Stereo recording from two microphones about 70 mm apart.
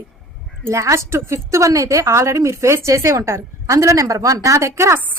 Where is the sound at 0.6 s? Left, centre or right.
Right.